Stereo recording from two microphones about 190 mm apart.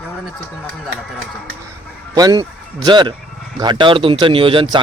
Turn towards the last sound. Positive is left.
turn(degrees=-25)  # may be behind; listen again after turning